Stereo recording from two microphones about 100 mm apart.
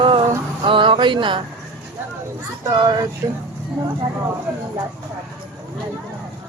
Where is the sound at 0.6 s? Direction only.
55° right (ahead or behind).